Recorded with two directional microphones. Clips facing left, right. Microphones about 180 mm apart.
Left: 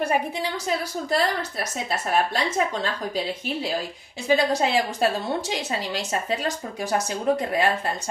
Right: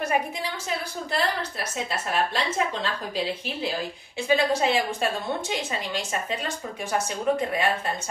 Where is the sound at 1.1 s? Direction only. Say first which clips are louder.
Left 3 dB; 45° left (ahead or behind).